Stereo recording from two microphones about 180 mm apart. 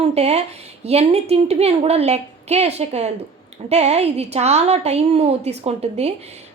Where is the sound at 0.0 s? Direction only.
35° right (ahead or behind).